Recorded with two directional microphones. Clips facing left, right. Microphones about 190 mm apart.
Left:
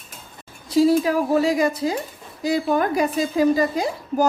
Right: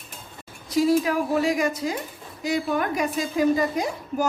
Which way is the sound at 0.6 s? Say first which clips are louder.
Left 4 dB; 30° left (ahead or behind).